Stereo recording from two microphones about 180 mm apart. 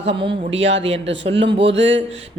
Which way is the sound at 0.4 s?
35° right (ahead or behind).